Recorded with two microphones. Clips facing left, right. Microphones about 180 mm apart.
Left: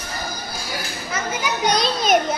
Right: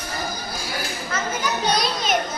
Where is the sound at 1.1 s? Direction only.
10° left (ahead or behind).